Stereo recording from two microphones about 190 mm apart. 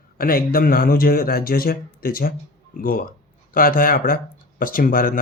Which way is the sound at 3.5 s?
50° left (ahead or behind).